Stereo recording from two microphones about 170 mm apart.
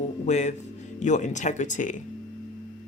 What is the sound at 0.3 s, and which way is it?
Speech, 45° left (ahead or behind).